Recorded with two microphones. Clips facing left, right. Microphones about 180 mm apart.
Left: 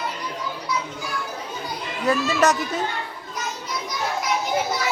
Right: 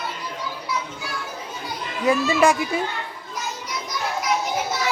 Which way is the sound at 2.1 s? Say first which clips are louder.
Right 2 dB; 10° right (ahead or behind).